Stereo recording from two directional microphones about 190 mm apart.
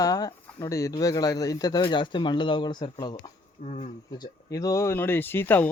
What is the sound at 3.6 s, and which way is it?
Speech, 35° left (ahead or behind).